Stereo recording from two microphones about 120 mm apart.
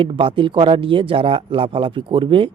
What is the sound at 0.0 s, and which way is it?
A man's voice, 45° right (ahead or behind).